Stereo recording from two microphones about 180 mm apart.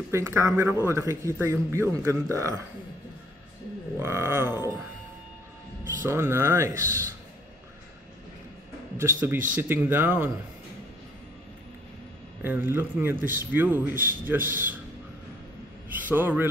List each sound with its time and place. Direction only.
0.1 s a man's voice: 15° right (ahead or behind)
4.0 s a man's voice: 15° right (ahead or behind)
6.0 s a man's voice: 15° right (ahead or behind)
8.9 s a man's voice: 15° right (ahead or behind)
12.4 s a man's voice: 10° right (ahead or behind)
13.2 s a man's voice: 50° right (ahead or behind)
13.5 s a man's voice: 10° right (ahead or behind)
16.1 s a man's voice: 10° right (ahead or behind)